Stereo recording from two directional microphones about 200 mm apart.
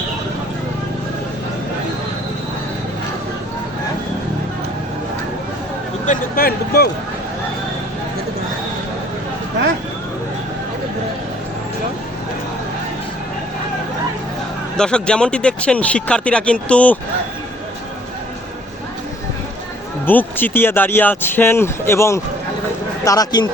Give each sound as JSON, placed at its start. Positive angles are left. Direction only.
{"t": 6.1, "sound": "speech", "side_deg": 45}
{"t": 14.8, "sound": "speech", "side_deg": 5}
{"t": 20.1, "sound": "a man's voice", "side_deg": 10}